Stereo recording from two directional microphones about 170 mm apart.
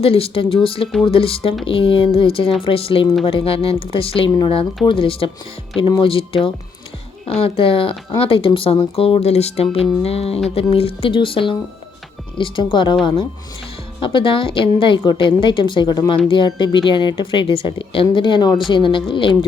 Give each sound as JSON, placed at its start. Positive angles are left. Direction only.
{"t": 0.0, "sound": "a woman's voice", "side_deg": 35}
{"t": 14.0, "sound": "a woman's voice", "side_deg": 30}